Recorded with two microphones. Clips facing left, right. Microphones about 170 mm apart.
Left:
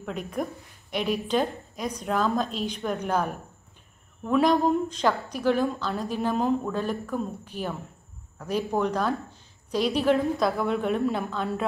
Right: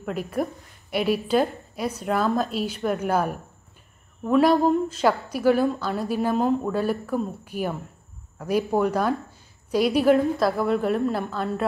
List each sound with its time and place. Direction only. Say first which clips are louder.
0.0 s a woman's voice: right 4 dB; 5° right (ahead or behind)